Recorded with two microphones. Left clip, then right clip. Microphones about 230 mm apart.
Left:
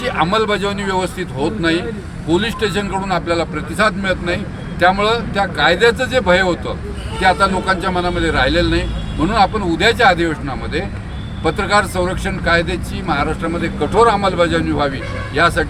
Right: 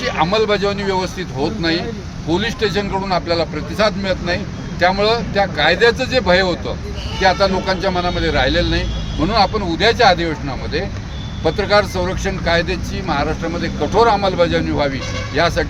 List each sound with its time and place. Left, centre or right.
0.0 s speech: centre